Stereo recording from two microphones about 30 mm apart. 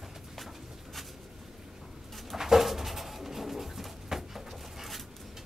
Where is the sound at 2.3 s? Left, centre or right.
Centre.